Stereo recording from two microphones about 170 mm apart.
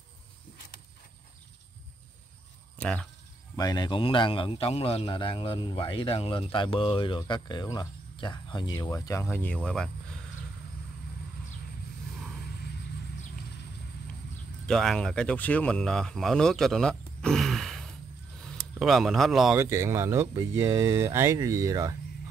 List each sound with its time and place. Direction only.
2.8 s speech: 5° left (ahead or behind)
3.5 s a man's voice: 20° left (ahead or behind); by 9.8 s 5° left (ahead or behind)
14.7 s speech: 5° left (ahead or behind)
19.5 s speech: 15° right (ahead or behind)